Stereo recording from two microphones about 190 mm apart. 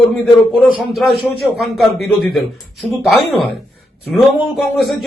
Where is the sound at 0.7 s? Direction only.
Centre (ahead or behind).